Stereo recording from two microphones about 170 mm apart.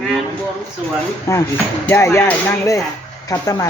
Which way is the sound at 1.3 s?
15° left (ahead or behind).